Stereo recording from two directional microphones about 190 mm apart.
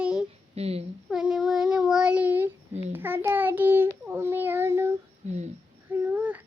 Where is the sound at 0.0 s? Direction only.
5° right (ahead or behind).